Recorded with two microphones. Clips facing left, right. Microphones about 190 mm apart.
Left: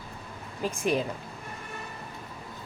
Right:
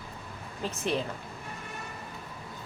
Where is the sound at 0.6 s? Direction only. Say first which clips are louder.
Left 3 dB; 10° left (ahead or behind).